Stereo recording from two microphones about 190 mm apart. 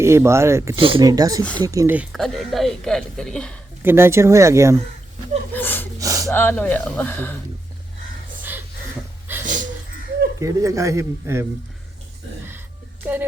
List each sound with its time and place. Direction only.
0.0 s a man's voice: 15° right (ahead or behind)
0.8 s a man's voice: 30° right (ahead or behind); by 2.0 s 15° right (ahead or behind)
2.1 s speech: centre (ahead or behind)
3.8 s a man's voice: 15° right (ahead or behind)
5.5 s gasp: 10° left (ahead or behind)
6.0 s gasp: 15° right (ahead or behind)
6.3 s speech: 10° left (ahead or behind)
8.4 s a sound: 10° right (ahead or behind)
9.4 s a sound: 40° right (ahead or behind)
10.4 s a man's voice: 15° right (ahead or behind)
12.5 s music: 10° right (ahead or behind)